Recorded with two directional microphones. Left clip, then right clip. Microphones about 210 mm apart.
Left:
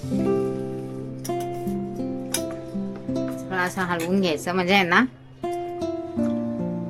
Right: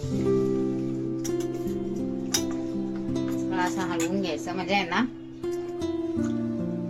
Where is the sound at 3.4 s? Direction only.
20° left (ahead or behind).